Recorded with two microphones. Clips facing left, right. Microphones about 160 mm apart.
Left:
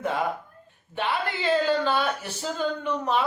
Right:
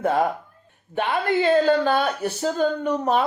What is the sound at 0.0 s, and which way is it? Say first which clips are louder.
Speech: right 6 dB; 50° right (ahead or behind).